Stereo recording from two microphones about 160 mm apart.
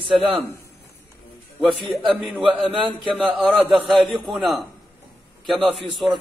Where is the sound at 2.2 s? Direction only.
Centre (ahead or behind).